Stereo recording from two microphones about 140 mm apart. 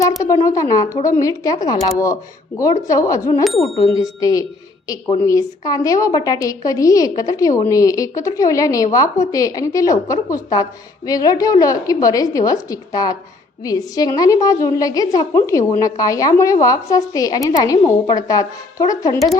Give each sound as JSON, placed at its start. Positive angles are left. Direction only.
{"t": 0.4, "sound": "a woman's voice", "side_deg": 25}